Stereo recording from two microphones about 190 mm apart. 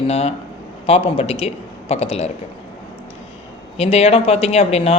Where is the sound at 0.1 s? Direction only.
35° left (ahead or behind).